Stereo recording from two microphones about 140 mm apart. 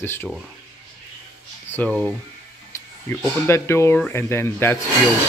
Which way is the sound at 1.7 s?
15° left (ahead or behind).